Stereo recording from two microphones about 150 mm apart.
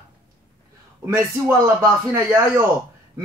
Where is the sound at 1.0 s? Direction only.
15° right (ahead or behind).